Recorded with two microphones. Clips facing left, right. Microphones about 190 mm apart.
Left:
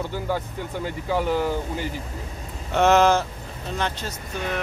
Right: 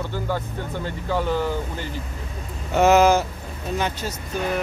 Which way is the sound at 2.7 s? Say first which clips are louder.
Right 2 dB; 5° right (ahead or behind).